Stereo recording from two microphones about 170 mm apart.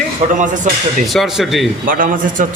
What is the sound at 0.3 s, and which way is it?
Speech, 50° right (ahead or behind).